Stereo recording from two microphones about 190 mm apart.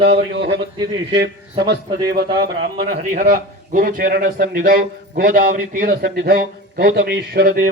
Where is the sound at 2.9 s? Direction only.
50° right (ahead or behind).